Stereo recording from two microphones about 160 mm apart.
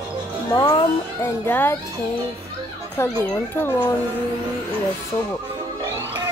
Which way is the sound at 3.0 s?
15° left (ahead or behind).